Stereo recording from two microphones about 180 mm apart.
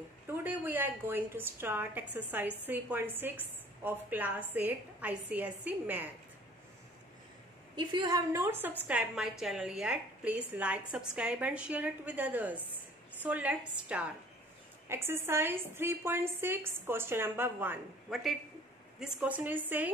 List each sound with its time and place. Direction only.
0.3 s a woman's voice: 10° right (ahead or behind)
7.7 s a woman's voice: 25° right (ahead or behind)